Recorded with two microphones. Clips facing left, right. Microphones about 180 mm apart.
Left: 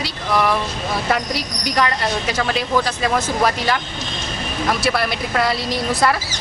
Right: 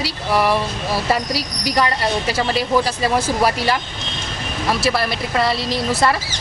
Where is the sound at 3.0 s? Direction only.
10° right (ahead or behind).